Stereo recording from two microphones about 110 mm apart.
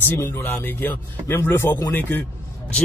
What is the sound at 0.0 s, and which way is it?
A man's voice, 20° left (ahead or behind).